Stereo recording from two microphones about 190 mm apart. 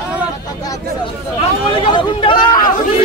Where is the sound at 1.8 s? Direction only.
25° left (ahead or behind).